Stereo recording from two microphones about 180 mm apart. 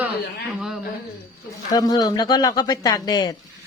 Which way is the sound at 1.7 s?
20° left (ahead or behind).